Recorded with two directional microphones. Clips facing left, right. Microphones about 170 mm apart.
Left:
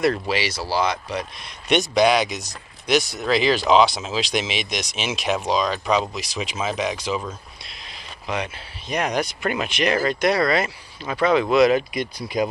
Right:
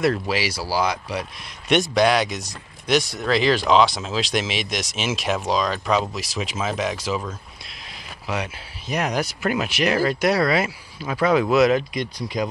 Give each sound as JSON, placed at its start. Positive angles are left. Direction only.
{"t": 0.0, "sound": "speech", "side_deg": 0}
{"t": 8.3, "sound": "speech", "side_deg": -5}